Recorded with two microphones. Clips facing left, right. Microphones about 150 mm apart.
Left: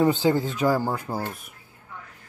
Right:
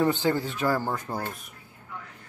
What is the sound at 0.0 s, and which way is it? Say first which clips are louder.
Speech: left 3 dB; 15° left (ahead or behind).